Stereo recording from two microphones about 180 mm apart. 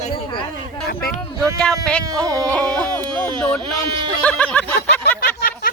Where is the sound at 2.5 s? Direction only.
5° left (ahead or behind).